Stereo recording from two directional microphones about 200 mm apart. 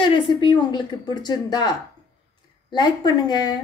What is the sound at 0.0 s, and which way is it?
A woman's voice, 25° left (ahead or behind).